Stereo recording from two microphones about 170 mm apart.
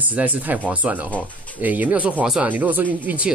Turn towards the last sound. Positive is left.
turn(degrees=-10)  # may be behind; listen again after turning